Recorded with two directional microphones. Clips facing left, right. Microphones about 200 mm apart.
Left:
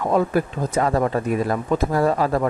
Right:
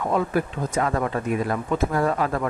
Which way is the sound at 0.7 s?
35° left (ahead or behind).